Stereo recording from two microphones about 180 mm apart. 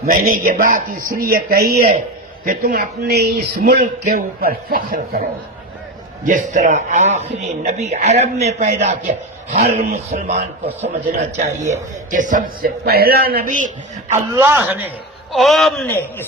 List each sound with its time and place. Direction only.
0.0 s a man's voice: 55° right (ahead or behind)
6.2 s a man's voice: 45° right (ahead or behind)
11.7 s a man's voice: 45° right (ahead or behind)
14.1 s a man's voice: 15° right (ahead or behind)
15.3 s a man's voice: centre (ahead or behind)
15.9 s a man's voice: 10° left (ahead or behind)